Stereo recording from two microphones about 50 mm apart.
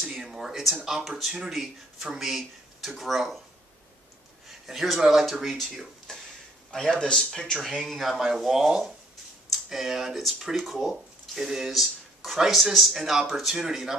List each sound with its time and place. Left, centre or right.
0.1 s a sound: centre
0.8 s speech: centre
4.5 s speech: centre
6.7 s speech: centre
7.8 s speech: centre